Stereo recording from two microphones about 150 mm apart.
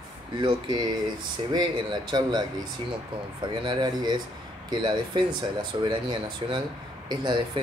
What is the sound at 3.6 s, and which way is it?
Speech, 30° right (ahead or behind).